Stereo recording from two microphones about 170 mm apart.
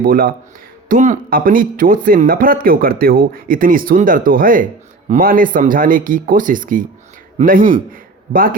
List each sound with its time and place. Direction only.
0.0 s speech: 60° right (ahead or behind)
0.9 s speech: 45° right (ahead or behind)